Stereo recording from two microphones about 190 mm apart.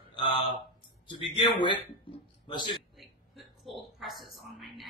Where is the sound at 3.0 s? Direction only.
Centre (ahead or behind).